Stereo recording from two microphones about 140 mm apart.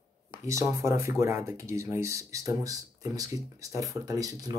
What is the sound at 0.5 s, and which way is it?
Speech, 20° right (ahead or behind).